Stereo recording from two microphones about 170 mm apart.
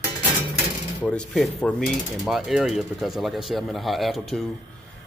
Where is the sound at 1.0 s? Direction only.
5° left (ahead or behind).